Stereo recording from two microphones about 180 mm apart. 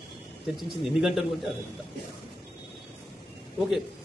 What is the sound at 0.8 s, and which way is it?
Speech, centre (ahead or behind).